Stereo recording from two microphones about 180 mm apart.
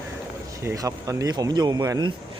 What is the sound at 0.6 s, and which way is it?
Speech, 20° right (ahead or behind).